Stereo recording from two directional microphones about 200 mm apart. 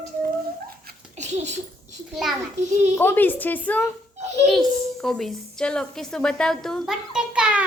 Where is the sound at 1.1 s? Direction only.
35° right (ahead or behind).